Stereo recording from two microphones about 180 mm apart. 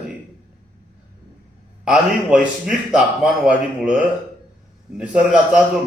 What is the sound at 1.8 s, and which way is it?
A man's voice, 5° right (ahead or behind).